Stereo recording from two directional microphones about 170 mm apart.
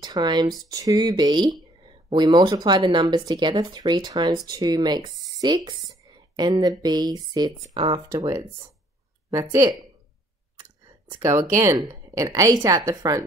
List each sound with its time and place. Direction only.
0.0 s a woman's voice: 25° right (ahead or behind)
11.1 s speech: 20° right (ahead or behind)